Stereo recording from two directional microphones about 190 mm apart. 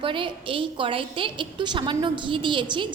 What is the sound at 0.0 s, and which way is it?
A woman's voice, 25° right (ahead or behind).